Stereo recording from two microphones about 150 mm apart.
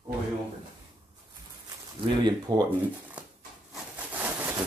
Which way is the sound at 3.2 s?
10° right (ahead or behind).